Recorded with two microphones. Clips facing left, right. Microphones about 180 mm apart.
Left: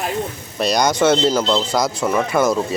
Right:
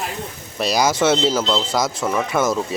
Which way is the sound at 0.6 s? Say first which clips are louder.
Left 2 dB; 5° right (ahead or behind).